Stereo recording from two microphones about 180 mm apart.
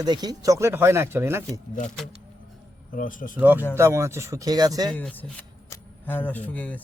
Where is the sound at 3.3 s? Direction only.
10° right (ahead or behind).